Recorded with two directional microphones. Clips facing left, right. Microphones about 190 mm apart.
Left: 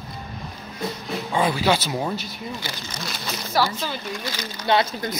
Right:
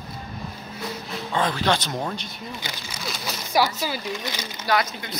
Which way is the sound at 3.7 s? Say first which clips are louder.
Right 1 dB; 10° right (ahead or behind).